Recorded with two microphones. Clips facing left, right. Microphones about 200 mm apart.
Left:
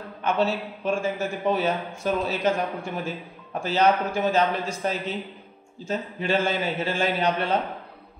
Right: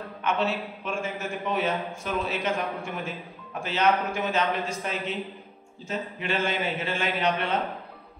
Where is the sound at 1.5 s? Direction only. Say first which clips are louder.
Left 2 dB; 35° left (ahead or behind).